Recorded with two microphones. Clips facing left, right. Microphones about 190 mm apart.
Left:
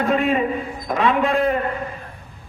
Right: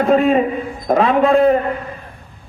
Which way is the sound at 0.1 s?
35° right (ahead or behind).